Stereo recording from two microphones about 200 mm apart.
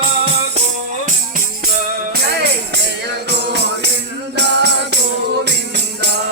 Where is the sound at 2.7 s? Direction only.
60° right (ahead or behind).